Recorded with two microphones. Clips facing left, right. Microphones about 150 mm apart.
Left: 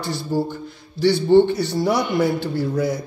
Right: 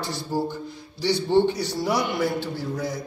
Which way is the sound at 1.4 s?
55° left (ahead or behind).